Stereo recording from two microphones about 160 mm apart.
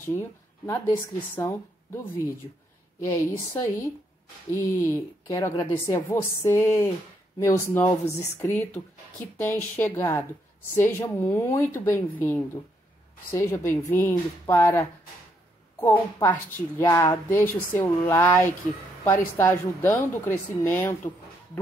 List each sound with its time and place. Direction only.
0.0 s speech: 15° left (ahead or behind)
3.1 s speech: 20° left (ahead or behind)